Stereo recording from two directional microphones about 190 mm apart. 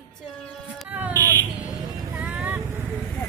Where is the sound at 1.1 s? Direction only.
20° right (ahead or behind).